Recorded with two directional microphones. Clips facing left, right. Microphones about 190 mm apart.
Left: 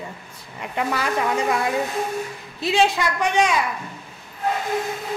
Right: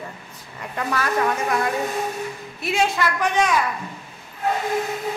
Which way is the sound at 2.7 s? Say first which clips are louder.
Left 2 dB; 15° left (ahead or behind).